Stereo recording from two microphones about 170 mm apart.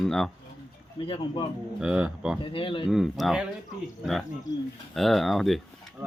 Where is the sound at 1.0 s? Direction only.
30° left (ahead or behind).